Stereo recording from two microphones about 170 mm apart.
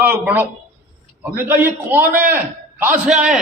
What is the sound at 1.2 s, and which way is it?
A man's voice, 10° right (ahead or behind).